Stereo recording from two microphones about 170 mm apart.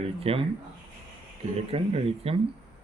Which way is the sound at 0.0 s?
35° right (ahead or behind).